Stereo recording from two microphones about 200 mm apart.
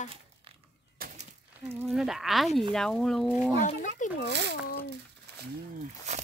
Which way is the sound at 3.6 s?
40° left (ahead or behind).